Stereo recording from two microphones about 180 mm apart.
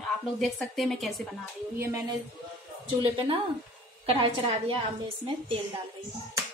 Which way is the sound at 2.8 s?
30° right (ahead or behind).